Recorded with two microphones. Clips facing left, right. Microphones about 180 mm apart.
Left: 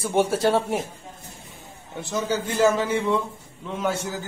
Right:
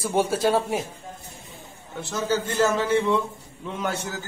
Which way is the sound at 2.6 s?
10° left (ahead or behind).